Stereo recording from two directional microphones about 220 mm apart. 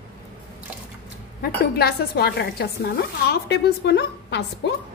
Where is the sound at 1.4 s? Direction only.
45° left (ahead or behind).